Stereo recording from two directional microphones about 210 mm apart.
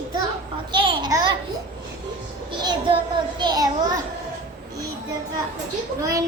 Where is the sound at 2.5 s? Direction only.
20° right (ahead or behind).